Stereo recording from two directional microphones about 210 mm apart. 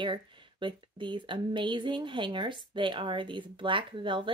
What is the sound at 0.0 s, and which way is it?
Speech, 20° right (ahead or behind).